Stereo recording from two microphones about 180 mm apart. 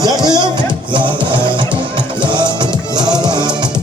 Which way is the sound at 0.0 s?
20° right (ahead or behind).